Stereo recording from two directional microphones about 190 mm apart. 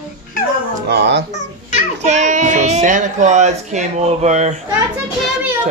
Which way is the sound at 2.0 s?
40° right (ahead or behind).